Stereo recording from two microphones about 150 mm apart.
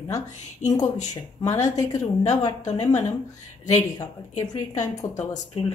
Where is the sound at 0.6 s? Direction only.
25° left (ahead or behind).